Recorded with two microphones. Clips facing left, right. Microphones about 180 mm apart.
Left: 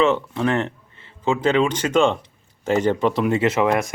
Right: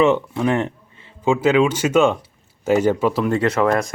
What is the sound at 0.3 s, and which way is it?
Speech, 15° right (ahead or behind).